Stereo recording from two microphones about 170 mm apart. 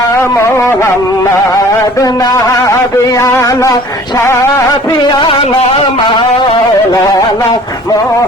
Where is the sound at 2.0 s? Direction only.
20° left (ahead or behind).